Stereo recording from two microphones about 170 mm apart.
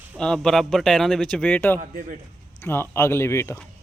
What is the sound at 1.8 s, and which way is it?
Speech, 50° right (ahead or behind).